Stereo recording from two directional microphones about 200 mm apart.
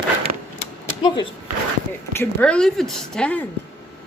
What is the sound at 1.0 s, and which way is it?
Speech, 25° left (ahead or behind).